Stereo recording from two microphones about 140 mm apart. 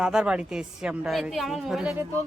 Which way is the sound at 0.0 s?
5° right (ahead or behind).